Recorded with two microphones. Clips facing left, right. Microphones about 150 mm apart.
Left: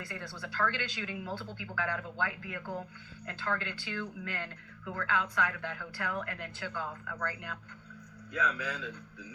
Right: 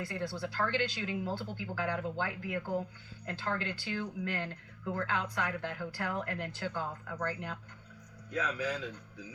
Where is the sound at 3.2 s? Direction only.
30° right (ahead or behind).